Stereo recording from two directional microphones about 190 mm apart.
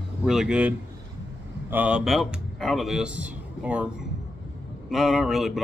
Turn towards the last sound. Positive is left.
turn(degrees=0)  # may be behind; listen again after turning